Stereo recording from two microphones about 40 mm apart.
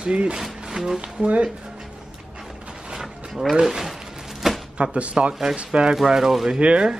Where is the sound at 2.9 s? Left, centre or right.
Centre.